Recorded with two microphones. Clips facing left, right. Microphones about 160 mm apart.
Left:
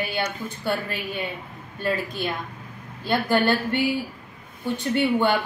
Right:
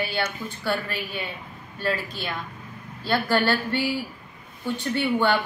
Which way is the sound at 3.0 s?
15° left (ahead or behind).